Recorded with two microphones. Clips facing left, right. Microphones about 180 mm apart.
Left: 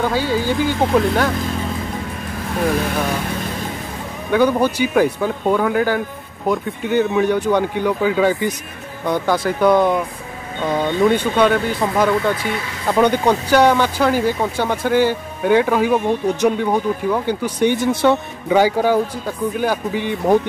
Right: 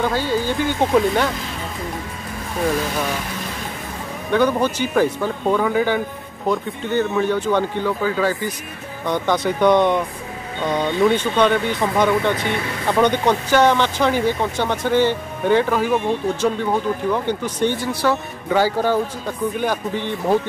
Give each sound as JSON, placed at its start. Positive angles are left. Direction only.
{"t": 0.0, "sound": "speech", "side_deg": 10}
{"t": 4.3, "sound": "speech", "side_deg": 10}
{"t": 9.0, "sound": "speech", "side_deg": 10}